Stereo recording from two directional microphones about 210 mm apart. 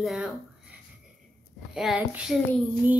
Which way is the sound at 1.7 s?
5° right (ahead or behind).